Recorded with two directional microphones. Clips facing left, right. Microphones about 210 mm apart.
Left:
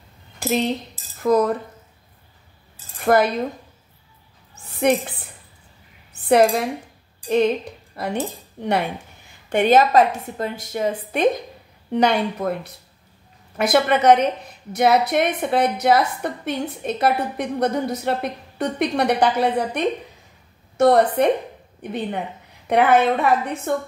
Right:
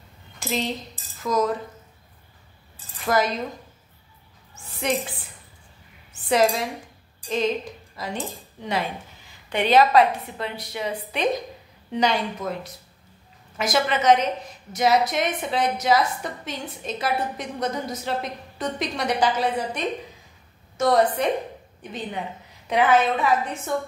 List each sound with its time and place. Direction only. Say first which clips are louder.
0.4 s cutlery: left 6 dB; 60° left (ahead or behind)
3.0 s cutlery: left 5 dB; 60° left (ahead or behind)
6.2 s speech: left 5 dB; 60° left (ahead or behind)
9.5 s a woman's voice: left 3 dB; 50° left (ahead or behind)